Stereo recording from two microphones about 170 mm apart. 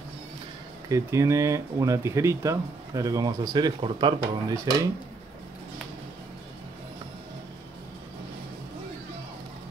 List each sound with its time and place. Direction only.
0.8 s speech: 20° right (ahead or behind)